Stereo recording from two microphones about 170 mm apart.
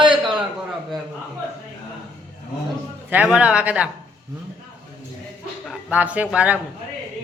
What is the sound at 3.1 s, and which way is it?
Speech, 10° right (ahead or behind).